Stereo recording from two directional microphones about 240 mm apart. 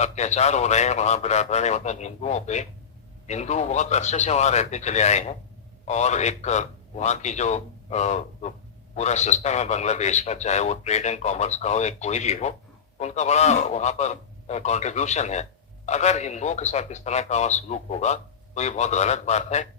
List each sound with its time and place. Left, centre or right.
0.0 s a man's voice: left